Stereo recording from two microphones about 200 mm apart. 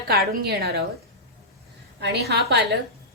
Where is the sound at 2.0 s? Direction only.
55° right (ahead or behind).